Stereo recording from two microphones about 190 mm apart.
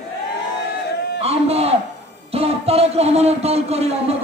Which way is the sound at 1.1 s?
30° right (ahead or behind).